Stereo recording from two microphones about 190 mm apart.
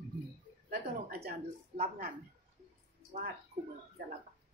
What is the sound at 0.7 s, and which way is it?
Speech, 55° right (ahead or behind).